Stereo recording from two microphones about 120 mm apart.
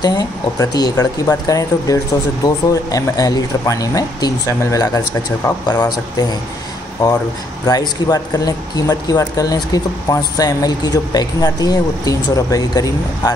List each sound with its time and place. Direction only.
0.0 s speech: 35° left (ahead or behind)
7.6 s speech: 30° left (ahead or behind)